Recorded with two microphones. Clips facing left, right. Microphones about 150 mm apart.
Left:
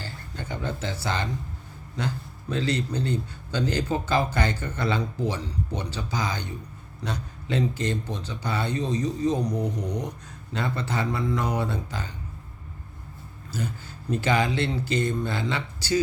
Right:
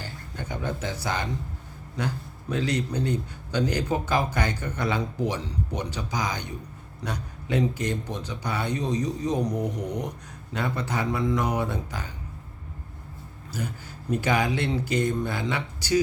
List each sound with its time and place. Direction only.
0.0 s speech: 15° right (ahead or behind)
2.5 s speech: 10° right (ahead or behind)
13.5 s speech: 10° right (ahead or behind)